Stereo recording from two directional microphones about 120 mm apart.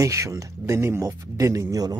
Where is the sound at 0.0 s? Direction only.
25° right (ahead or behind).